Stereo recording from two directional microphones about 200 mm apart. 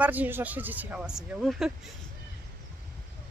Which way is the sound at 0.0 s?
10° right (ahead or behind).